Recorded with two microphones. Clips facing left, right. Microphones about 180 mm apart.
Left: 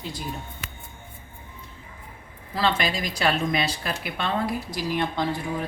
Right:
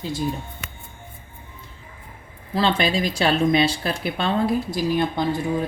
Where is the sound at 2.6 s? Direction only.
30° right (ahead or behind).